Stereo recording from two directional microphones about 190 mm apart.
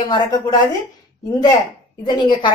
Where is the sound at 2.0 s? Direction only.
25° left (ahead or behind).